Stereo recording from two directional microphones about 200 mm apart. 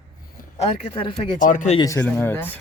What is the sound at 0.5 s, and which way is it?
Speech, 25° left (ahead or behind).